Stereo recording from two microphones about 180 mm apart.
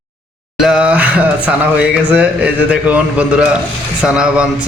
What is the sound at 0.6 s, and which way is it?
A man's voice, 5° right (ahead or behind).